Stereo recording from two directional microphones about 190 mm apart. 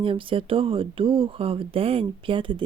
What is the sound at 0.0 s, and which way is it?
Speech, 25° right (ahead or behind).